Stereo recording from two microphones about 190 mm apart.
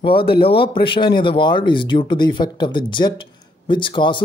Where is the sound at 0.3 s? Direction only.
30° left (ahead or behind).